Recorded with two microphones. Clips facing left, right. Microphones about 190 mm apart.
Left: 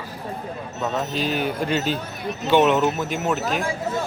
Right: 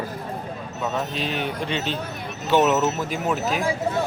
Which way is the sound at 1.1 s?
Centre (ahead or behind).